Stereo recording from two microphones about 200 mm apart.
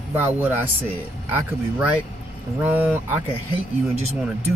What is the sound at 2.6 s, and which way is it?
Speech, 10° right (ahead or behind).